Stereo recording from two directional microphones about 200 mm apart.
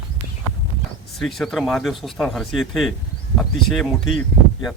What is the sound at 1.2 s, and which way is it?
Speech, centre (ahead or behind).